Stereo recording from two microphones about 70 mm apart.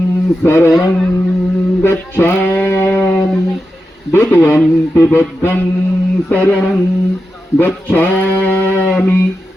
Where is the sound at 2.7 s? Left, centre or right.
Left.